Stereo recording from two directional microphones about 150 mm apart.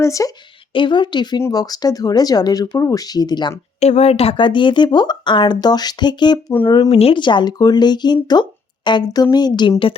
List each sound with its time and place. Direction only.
0.0 s speech: 20° left (ahead or behind)
0.7 s speech: 35° left (ahead or behind)
3.8 s speech: 45° left (ahead or behind); by 6.4 s 30° left (ahead or behind)
6.8 s speech: 40° left (ahead or behind)